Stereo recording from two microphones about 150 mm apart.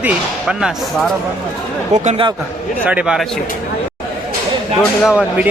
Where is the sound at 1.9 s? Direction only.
50° right (ahead or behind).